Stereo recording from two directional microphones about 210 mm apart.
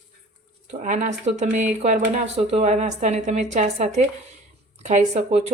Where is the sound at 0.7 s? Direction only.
35° right (ahead or behind).